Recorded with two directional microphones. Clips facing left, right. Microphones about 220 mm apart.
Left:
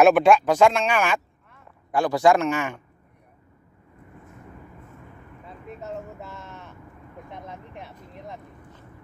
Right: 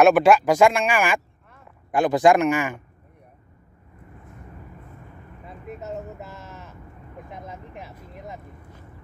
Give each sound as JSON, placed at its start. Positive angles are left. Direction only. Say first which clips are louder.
{"t": 0.0, "sound": "speech", "louder": "right 1 dB", "side_deg": -5}
{"t": 5.8, "sound": "a sound", "louder": "right 1 dB", "side_deg": -5}
{"t": 7.2, "sound": "vehicle", "louder": "even", "side_deg": -5}